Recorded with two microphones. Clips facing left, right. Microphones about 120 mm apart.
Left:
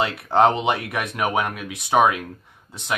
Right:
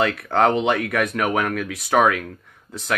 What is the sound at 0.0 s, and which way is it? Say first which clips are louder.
Speech: left 1 dB; 25° left (ahead or behind).